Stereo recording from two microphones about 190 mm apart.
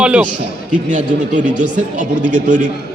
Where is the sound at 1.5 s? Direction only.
5° right (ahead or behind).